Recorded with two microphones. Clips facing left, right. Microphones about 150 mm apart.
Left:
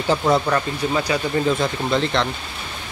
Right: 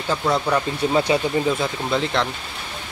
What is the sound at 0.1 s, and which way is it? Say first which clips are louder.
Speech: left 3 dB; 15° left (ahead or behind).